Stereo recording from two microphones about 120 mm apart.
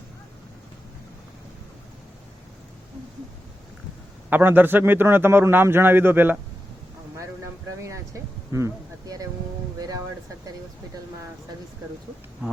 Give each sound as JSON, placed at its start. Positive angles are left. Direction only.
{"t": 4.3, "sound": "a man's voice", "side_deg": -15}
{"t": 7.8, "sound": "speech", "side_deg": -25}
{"t": 8.5, "sound": "a sound", "side_deg": -30}